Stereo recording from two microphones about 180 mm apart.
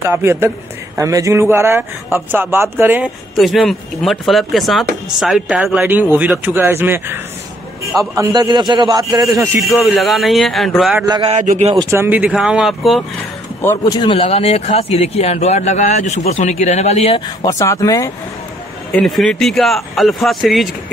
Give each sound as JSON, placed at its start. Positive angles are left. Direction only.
{"t": 0.1, "sound": "speech", "side_deg": -15}
{"t": 3.3, "sound": "a man's voice", "side_deg": 0}
{"t": 9.8, "sound": "a man's voice", "side_deg": 0}
{"t": 11.4, "sound": "speech", "side_deg": -40}
{"t": 11.7, "sound": "a man's voice", "side_deg": -20}
{"t": 13.6, "sound": "speech", "side_deg": 15}
{"t": 17.6, "sound": "speech", "side_deg": 20}
{"t": 18.9, "sound": "a man's voice", "side_deg": 5}